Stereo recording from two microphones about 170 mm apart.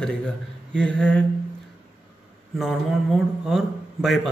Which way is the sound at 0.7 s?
5° left (ahead or behind).